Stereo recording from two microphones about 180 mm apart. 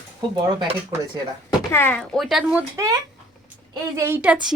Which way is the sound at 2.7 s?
20° right (ahead or behind).